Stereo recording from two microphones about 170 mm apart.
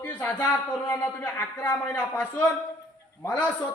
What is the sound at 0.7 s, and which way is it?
Speech, 20° left (ahead or behind).